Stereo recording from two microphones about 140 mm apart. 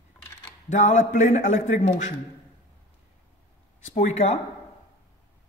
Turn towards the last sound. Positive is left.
turn(degrees=50)  # may be behind; listen again after turning